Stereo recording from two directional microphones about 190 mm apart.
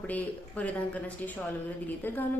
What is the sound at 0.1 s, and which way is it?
A woman's voice, 5° left (ahead or behind).